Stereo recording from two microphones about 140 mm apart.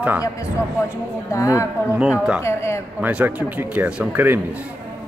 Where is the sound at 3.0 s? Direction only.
10° right (ahead or behind).